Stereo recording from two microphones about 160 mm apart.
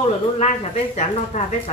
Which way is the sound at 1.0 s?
45° left (ahead or behind).